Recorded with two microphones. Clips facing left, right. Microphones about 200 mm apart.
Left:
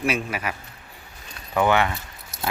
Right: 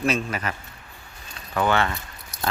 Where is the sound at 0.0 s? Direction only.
10° left (ahead or behind).